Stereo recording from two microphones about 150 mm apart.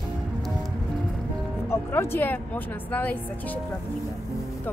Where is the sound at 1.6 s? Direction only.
15° left (ahead or behind).